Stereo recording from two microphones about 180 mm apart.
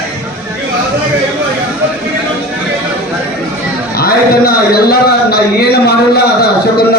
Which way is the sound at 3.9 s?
60° left (ahead or behind).